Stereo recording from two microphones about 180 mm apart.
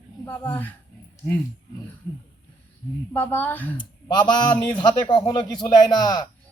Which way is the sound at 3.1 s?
10° left (ahead or behind).